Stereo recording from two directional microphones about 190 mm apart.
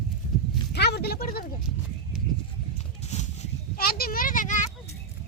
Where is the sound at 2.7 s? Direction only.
35° left (ahead or behind).